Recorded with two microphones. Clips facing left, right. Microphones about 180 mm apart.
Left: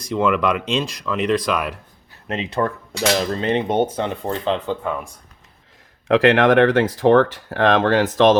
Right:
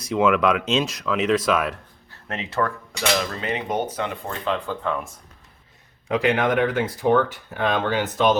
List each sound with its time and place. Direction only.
0.0 s speech: 5° right (ahead or behind)
2.2 s speech: 20° left (ahead or behind)
3.2 s speech: 30° left (ahead or behind)
4.8 s speech: 5° left (ahead or behind)
6.1 s speech: 90° left